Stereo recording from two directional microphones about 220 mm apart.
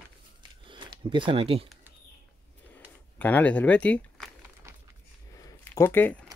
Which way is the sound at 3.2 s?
5° left (ahead or behind).